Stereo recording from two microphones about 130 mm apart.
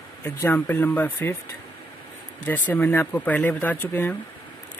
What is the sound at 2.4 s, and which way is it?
Speech, 15° left (ahead or behind).